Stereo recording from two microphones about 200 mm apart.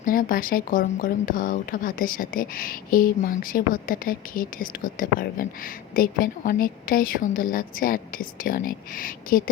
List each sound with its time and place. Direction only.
0.0 s speech: 45° left (ahead or behind)